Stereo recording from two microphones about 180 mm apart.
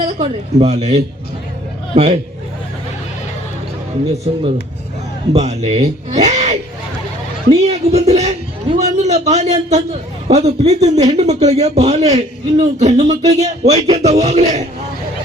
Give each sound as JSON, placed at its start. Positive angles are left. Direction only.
{"t": 0.0, "sound": "a man's voice", "side_deg": -35}
{"t": 1.9, "sound": "a man's voice", "side_deg": -40}
{"t": 5.3, "sound": "speech", "side_deg": -35}
{"t": 7.5, "sound": "a sound", "side_deg": -35}
{"t": 10.2, "sound": "a man's voice", "side_deg": -35}